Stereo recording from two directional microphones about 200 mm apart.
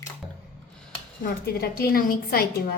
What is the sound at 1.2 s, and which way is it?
A woman's voice, 50° left (ahead or behind).